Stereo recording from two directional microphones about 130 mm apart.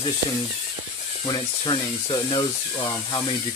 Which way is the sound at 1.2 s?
35° left (ahead or behind).